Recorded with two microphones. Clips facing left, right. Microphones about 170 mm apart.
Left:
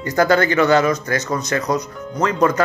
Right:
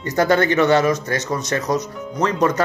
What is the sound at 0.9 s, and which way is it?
Speech, 20° right (ahead or behind).